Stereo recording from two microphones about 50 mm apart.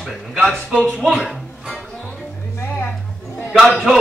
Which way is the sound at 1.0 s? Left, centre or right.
Centre.